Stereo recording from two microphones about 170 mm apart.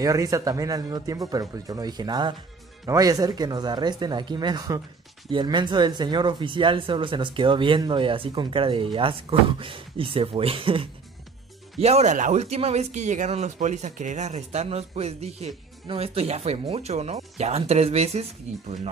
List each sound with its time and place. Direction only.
0.0 s speech: 20° right (ahead or behind); by 18.2 s 35° right (ahead or behind)